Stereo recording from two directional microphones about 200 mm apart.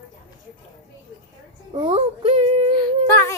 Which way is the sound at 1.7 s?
25° right (ahead or behind).